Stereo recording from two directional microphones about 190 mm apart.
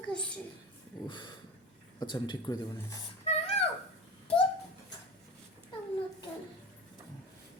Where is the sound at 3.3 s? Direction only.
35° left (ahead or behind).